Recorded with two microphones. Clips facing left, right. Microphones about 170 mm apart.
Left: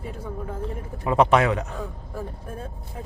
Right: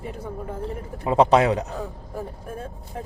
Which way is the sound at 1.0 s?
25° right (ahead or behind).